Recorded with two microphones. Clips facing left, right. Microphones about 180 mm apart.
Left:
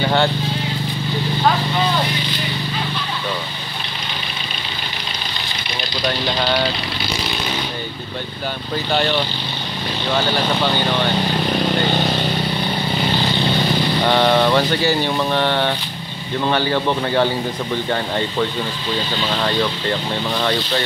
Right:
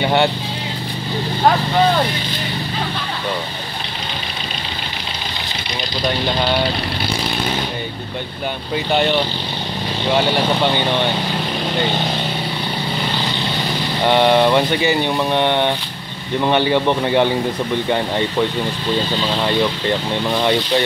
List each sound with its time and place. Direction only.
0.0 s a man's voice: 20° right (ahead or behind)
14.0 s a man's voice: 15° right (ahead or behind)